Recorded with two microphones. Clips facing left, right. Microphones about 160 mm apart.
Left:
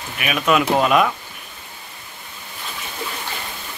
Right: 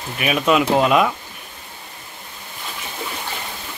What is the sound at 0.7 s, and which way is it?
Speech, 15° right (ahead or behind).